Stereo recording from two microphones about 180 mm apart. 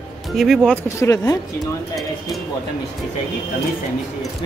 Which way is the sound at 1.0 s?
15° left (ahead or behind).